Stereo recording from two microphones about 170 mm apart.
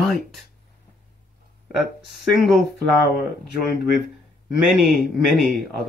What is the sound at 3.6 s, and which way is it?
Speech, centre (ahead or behind).